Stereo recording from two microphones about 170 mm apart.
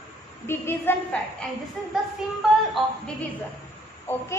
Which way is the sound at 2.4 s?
Centre (ahead or behind).